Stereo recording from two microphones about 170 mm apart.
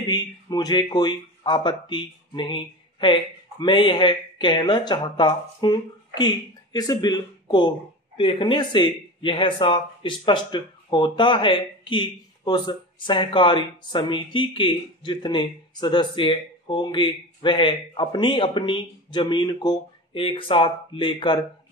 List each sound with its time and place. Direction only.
0.1 s speech: 25° left (ahead or behind)